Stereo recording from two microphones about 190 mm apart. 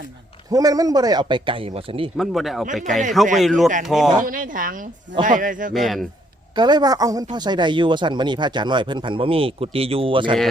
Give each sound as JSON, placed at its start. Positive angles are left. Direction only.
{"t": 0.5, "sound": "speech", "side_deg": -20}
{"t": 2.1, "sound": "speech", "side_deg": 0}
{"t": 4.2, "sound": "speech", "side_deg": -45}
{"t": 5.7, "sound": "speech", "side_deg": 0}
{"t": 6.6, "sound": "speech", "side_deg": -20}